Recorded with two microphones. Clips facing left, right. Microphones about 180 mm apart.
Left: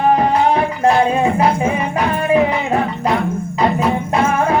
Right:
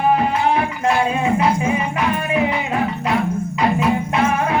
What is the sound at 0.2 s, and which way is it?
Music, 35° left (ahead or behind).